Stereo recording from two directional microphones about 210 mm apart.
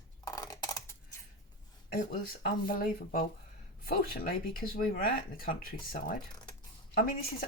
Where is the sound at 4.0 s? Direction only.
40° left (ahead or behind).